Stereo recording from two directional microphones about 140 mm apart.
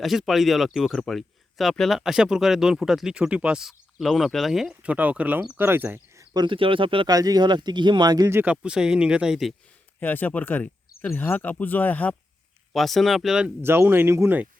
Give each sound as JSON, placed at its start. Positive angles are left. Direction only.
{"t": 0.0, "sound": "speech", "side_deg": 0}
{"t": 6.3, "sound": "speech", "side_deg": -35}
{"t": 10.0, "sound": "speech", "side_deg": 15}
{"t": 12.7, "sound": "speech", "side_deg": 0}
{"t": 13.6, "sound": "speech", "side_deg": -15}